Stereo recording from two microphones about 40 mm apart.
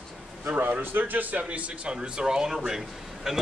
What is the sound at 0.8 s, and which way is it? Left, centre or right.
A man's voice, right.